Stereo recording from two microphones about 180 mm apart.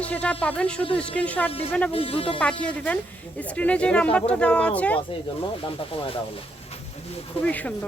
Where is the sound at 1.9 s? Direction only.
30° left (ahead or behind).